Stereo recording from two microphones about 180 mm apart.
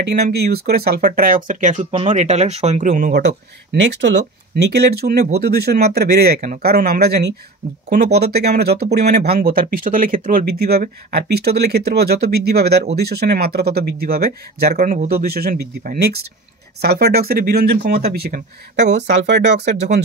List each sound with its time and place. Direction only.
0.0 s speech: 65° right (ahead or behind); by 3.1 s 45° right (ahead or behind)
3.1 s speech: 70° right (ahead or behind)
19.0 s speech: 70° right (ahead or behind)